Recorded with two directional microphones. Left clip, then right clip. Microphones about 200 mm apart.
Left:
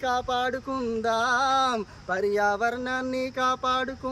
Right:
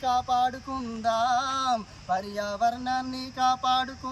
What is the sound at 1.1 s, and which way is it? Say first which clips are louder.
Male singing: left 1 dB; 25° left (ahead or behind).